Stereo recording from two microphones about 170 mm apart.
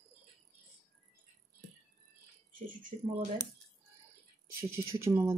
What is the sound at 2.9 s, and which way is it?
Speech, 40° right (ahead or behind).